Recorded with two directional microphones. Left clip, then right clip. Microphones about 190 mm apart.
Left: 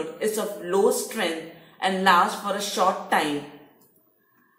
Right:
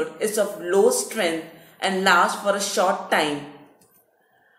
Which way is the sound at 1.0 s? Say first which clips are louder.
Right 3 dB; 10° right (ahead or behind).